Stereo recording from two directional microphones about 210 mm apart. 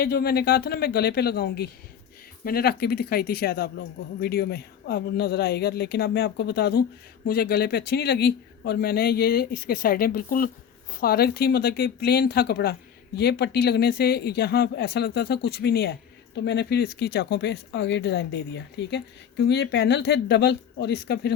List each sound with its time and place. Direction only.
0.0 s speech: 50° left (ahead or behind)